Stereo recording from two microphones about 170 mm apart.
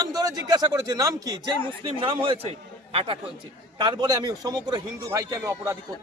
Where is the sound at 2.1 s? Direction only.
30° right (ahead or behind).